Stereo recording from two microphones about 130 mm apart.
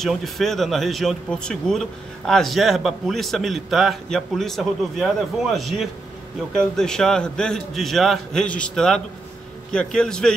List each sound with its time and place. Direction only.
0.0 s speech: centre (ahead or behind)